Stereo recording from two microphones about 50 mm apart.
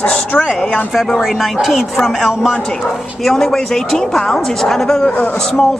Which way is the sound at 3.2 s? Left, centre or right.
Centre.